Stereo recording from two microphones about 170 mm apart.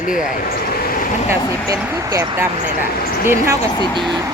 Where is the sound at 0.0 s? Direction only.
50° left (ahead or behind).